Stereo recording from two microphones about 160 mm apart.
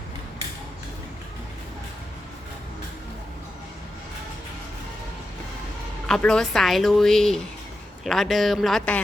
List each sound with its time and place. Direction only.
6.1 s a woman's voice: 5° left (ahead or behind)